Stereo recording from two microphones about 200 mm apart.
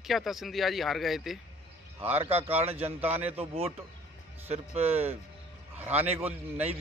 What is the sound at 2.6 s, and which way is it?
Speech, 30° right (ahead or behind).